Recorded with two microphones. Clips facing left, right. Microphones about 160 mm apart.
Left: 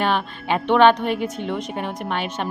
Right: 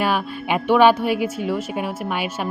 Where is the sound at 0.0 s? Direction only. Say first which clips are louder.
Even; 5° right (ahead or behind).